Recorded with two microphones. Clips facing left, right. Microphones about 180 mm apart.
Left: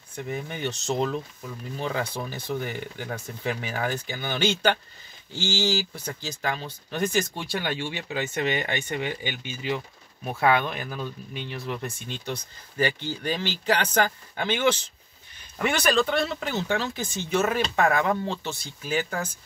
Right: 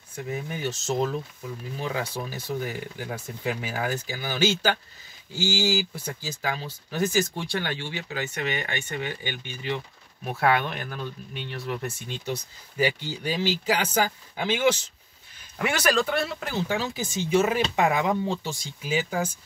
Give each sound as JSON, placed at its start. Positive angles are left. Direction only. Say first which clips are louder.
{"t": 0.1, "sound": "speech", "louder": "even", "side_deg": -5}
{"t": 7.5, "sound": "speech", "louder": "left 2 dB", "side_deg": 10}
{"t": 8.4, "sound": "speech", "louder": "left 4 dB", "side_deg": 30}
{"t": 8.8, "sound": "speech", "louder": "left 2 dB", "side_deg": 15}
{"t": 10.2, "sound": "speech", "louder": "left 1 dB", "side_deg": -5}